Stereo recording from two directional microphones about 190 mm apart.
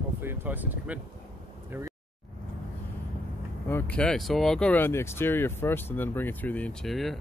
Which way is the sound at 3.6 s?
10° left (ahead or behind).